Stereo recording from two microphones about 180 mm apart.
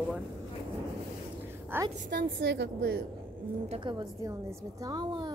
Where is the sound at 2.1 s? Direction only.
75° right (ahead or behind).